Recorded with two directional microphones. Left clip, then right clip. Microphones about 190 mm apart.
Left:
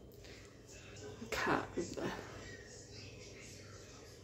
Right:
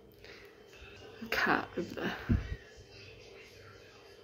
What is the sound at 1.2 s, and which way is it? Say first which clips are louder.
Speech: right 6 dB; 10° right (ahead or behind).